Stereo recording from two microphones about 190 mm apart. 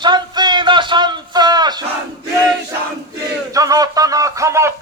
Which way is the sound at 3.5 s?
20° right (ahead or behind).